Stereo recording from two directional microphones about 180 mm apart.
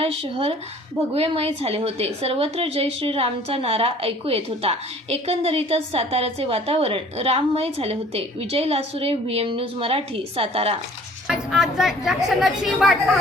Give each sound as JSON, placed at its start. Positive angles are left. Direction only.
{"t": 0.0, "sound": "a woman's voice", "side_deg": -30}
{"t": 11.3, "sound": "speech", "side_deg": -5}